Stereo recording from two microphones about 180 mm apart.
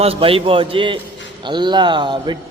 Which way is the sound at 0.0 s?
30° right (ahead or behind).